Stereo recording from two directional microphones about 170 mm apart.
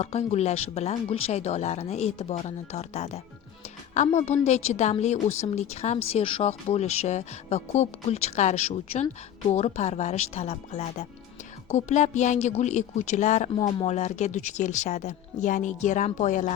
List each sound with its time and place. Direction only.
0.0 s a woman's voice: 40° left (ahead or behind)